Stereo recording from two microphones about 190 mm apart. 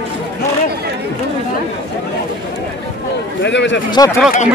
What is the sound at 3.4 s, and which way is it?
Speech, 70° left (ahead or behind).